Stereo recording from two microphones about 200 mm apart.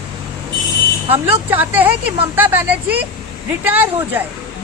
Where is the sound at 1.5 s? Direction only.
10° right (ahead or behind).